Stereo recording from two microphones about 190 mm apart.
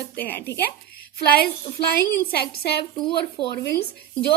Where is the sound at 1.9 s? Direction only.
55° left (ahead or behind).